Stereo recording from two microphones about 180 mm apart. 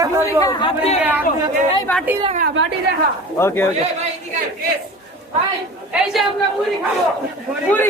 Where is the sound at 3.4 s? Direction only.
15° left (ahead or behind).